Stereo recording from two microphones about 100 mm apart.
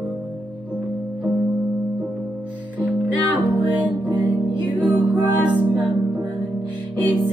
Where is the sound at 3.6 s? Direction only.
50° right (ahead or behind).